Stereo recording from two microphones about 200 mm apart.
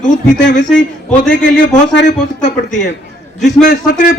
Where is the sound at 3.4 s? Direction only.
55° left (ahead or behind).